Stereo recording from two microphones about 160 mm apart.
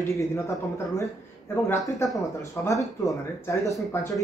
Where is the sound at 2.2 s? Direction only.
20° left (ahead or behind).